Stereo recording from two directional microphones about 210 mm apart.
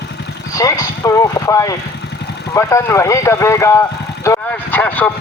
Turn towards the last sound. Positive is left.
turn(degrees=10)  # may be behind; listen again after turning